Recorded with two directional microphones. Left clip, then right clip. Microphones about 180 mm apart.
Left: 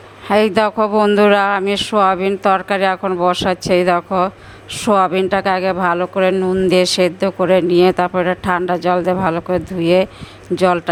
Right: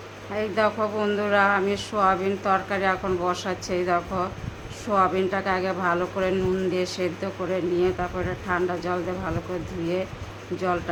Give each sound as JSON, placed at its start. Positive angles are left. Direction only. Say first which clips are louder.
{"t": 0.3, "sound": "speech", "louder": "left 10 dB", "side_deg": 60}
{"t": 6.7, "sound": "speech", "louder": "left 13 dB", "side_deg": 60}